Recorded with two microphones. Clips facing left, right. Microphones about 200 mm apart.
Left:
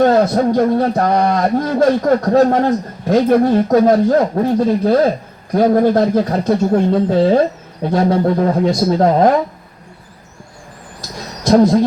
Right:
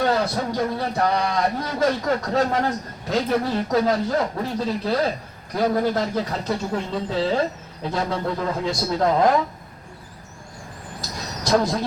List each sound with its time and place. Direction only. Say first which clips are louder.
0.0 s a man's voice: left 10 dB; 50° left (ahead or behind)
11.5 s owl: left 10 dB; 25° left (ahead or behind)